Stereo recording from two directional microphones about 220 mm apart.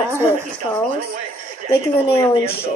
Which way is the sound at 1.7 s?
10° left (ahead or behind).